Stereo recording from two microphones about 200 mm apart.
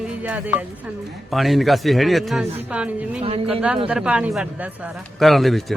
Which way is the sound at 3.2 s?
30° right (ahead or behind).